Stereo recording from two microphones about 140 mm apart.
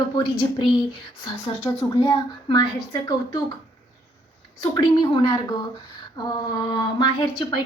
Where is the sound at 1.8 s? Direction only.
30° left (ahead or behind).